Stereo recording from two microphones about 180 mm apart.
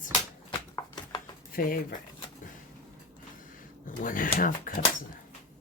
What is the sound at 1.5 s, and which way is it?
Speech, 55° left (ahead or behind).